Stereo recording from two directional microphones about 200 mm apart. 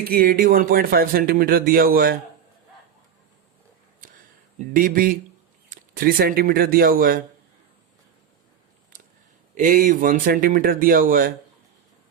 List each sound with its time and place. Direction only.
0.1 s speech: 45° right (ahead or behind)
4.5 s speech: 45° right (ahead or behind)
9.6 s speech: 45° right (ahead or behind)